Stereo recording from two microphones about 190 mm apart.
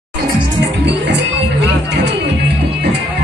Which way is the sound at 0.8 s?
65° right (ahead or behind).